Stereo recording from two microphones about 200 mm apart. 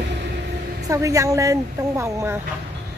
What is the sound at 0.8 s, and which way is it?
Speech, 15° right (ahead or behind).